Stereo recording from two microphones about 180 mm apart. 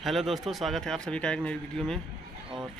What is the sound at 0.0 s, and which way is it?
A man's voice, centre (ahead or behind).